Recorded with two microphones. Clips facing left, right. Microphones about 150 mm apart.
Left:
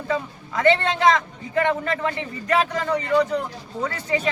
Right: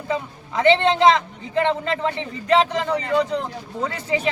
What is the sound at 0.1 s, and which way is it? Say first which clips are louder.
Speech: even; 25° right (ahead or behind).